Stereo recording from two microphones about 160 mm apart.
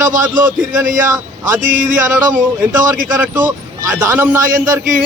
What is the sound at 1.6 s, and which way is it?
Speech, 55° right (ahead or behind).